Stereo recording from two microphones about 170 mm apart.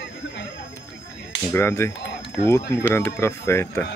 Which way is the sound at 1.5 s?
15° left (ahead or behind).